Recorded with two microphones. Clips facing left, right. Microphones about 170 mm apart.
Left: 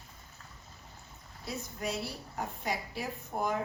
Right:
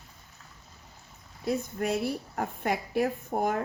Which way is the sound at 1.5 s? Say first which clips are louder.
Right 8 dB; 55° right (ahead or behind).